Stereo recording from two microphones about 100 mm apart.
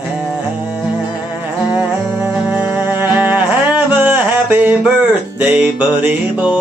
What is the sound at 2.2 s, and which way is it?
Music, 15° right (ahead or behind).